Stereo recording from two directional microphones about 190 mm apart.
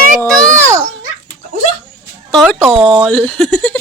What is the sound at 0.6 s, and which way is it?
Children playing, 15° right (ahead or behind).